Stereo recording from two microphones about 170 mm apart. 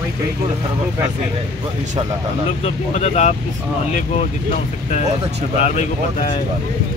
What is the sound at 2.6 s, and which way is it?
Speech, 40° left (ahead or behind).